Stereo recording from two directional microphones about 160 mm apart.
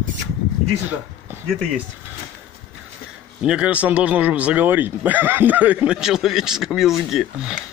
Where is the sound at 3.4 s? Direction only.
5° right (ahead or behind).